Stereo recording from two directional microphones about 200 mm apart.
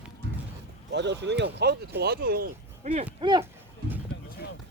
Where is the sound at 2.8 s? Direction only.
35° right (ahead or behind).